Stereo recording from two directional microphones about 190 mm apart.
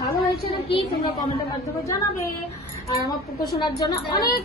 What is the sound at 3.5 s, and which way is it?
Speech, 20° left (ahead or behind).